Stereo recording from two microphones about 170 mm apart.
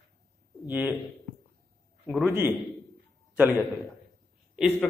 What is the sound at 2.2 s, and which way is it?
Speech, 15° right (ahead or behind).